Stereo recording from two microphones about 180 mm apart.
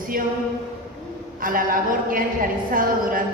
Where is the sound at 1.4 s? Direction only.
50° right (ahead or behind).